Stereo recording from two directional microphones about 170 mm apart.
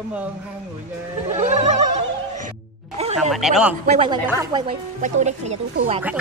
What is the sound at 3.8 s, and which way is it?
Speech, 40° right (ahead or behind).